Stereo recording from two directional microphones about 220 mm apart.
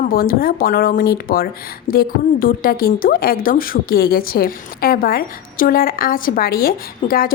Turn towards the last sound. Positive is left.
turn(degrees=40)  # may be behind; listen again after turning